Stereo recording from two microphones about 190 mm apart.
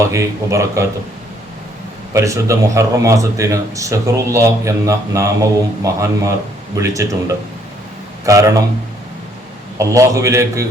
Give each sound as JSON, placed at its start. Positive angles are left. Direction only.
{"t": 0.0, "sound": "a man's voice", "side_deg": -15}
{"t": 2.1, "sound": "a man's voice", "side_deg": -15}
{"t": 9.7, "sound": "a man's voice", "side_deg": -15}